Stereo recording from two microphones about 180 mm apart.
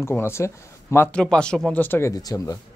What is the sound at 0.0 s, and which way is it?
A man's voice, 15° left (ahead or behind).